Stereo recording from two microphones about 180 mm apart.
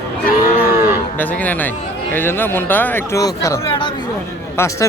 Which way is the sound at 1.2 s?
10° left (ahead or behind).